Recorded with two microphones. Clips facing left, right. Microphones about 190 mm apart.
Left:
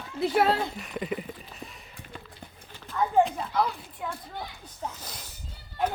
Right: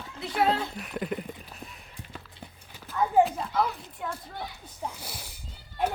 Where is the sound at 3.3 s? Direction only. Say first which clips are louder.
Even; centre (ahead or behind).